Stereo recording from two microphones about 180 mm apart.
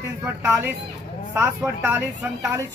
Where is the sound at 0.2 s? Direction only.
15° right (ahead or behind).